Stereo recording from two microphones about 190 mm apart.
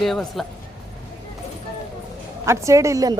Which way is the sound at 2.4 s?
15° right (ahead or behind).